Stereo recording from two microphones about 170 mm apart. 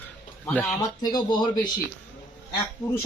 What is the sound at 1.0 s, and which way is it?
Speech, 25° left (ahead or behind).